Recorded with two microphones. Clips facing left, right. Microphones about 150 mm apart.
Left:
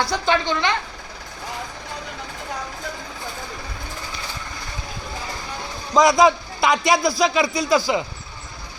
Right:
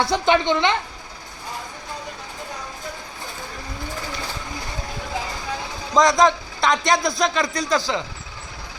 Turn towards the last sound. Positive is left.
turn(degrees=10)  # may be behind; listen again after turning